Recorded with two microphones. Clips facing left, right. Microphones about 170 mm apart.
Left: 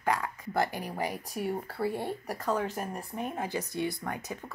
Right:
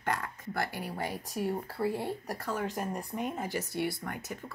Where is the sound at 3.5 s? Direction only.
20° left (ahead or behind).